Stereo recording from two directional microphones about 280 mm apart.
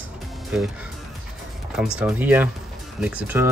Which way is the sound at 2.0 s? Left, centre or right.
Centre.